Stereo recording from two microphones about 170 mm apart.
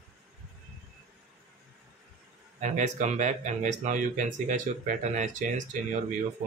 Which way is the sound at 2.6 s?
45° right (ahead or behind).